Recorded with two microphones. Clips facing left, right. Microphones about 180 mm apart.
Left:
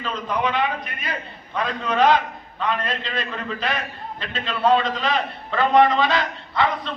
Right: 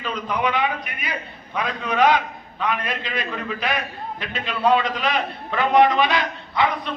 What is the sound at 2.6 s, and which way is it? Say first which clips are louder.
A man's voice: even; 10° right (ahead or behind).